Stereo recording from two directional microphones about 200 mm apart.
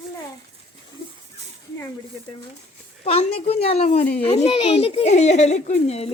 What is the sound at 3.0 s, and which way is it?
Speech, 30° left (ahead or behind).